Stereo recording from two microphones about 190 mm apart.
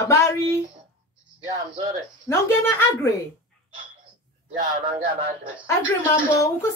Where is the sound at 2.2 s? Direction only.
15° left (ahead or behind).